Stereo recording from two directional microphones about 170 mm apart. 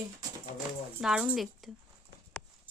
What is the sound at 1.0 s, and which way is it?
Speech, 5° right (ahead or behind).